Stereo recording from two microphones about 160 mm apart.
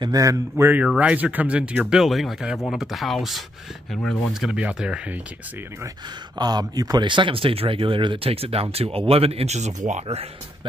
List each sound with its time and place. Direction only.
0.0 s speech: 20° right (ahead or behind)
6.3 s speech: 25° right (ahead or behind)